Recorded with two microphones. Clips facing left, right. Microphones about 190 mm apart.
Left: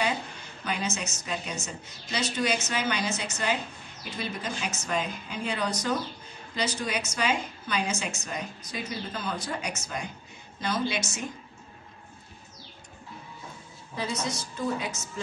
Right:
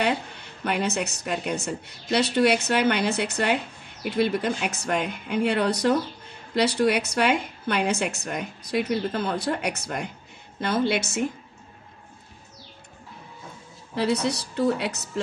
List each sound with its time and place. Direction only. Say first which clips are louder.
0.0 s a woman's voice: right 4 dB; 60° right (ahead or behind)
13.9 s a woman's voice: right 8 dB; 65° right (ahead or behind)